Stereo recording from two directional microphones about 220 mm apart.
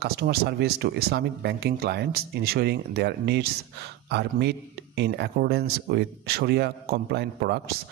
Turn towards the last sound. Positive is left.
turn(degrees=-45)  # may be behind; listen again after turning